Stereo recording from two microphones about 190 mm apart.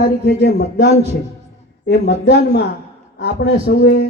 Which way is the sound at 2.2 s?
60° left (ahead or behind).